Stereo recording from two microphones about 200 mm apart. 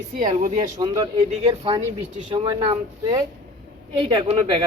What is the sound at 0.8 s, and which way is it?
Speech, 25° right (ahead or behind).